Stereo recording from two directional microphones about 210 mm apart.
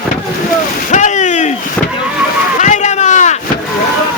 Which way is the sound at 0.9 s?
35° left (ahead or behind).